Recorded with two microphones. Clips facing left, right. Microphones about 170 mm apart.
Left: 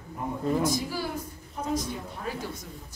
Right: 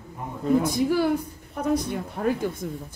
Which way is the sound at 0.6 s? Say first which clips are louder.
Right 7 dB; 60° right (ahead or behind).